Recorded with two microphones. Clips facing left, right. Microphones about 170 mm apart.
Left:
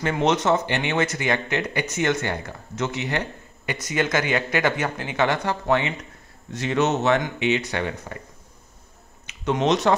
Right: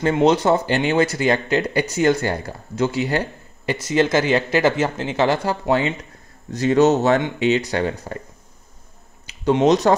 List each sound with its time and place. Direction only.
0.1 s speech: 30° right (ahead or behind)
9.2 s speech: 35° right (ahead or behind)